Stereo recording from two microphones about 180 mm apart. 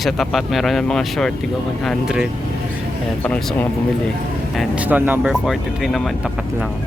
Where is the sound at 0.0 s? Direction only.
Centre (ahead or behind).